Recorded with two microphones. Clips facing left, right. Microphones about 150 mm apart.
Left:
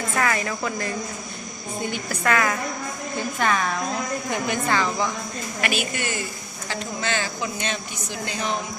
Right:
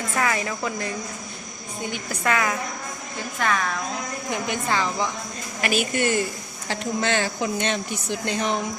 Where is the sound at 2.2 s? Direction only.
15° right (ahead or behind).